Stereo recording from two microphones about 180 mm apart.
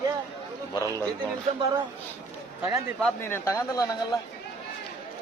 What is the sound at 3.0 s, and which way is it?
A man's voice, 10° left (ahead or behind).